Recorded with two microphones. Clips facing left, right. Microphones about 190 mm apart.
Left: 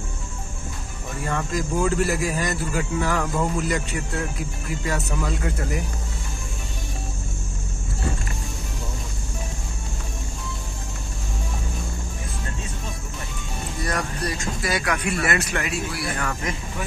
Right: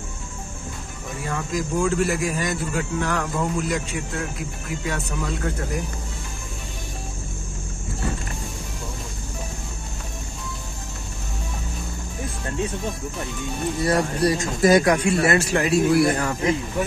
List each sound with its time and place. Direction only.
1.5 s a man's voice: centre (ahead or behind)
13.8 s speech: 30° right (ahead or behind)
14.6 s speech: 40° right (ahead or behind)
15.0 s a man's voice: 25° right (ahead or behind)
15.8 s speech: 50° right (ahead or behind)
16.2 s a man's voice: 25° right (ahead or behind)